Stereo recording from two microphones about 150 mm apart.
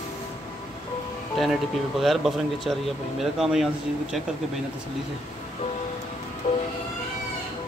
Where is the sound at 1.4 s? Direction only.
Centre (ahead or behind).